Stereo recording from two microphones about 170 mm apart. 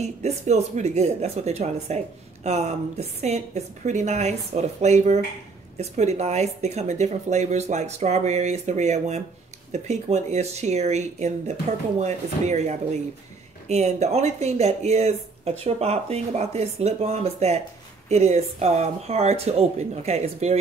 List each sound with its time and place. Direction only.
0.0 s speech: 40° right (ahead or behind)